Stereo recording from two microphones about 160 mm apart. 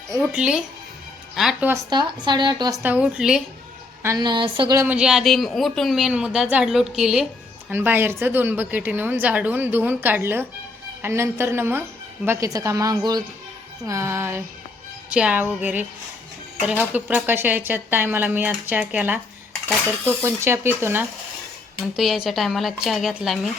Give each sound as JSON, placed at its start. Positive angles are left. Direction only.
{"t": 0.2, "sound": "a woman's voice", "side_deg": -5}
{"t": 1.9, "sound": "a woman's voice", "side_deg": -25}
{"t": 2.8, "sound": "a woman's voice", "side_deg": -10}
{"t": 4.0, "sound": "a woman's voice", "side_deg": -25}
{"t": 4.7, "sound": "a woman's voice", "side_deg": -15}
{"t": 4.9, "sound": "a woman's voice", "side_deg": -5}
{"t": 21.9, "sound": "speech", "side_deg": 0}